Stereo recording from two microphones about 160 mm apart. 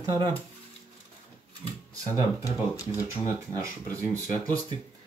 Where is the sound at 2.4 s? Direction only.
20° left (ahead or behind).